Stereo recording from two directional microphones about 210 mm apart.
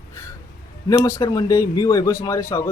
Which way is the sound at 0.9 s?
15° left (ahead or behind).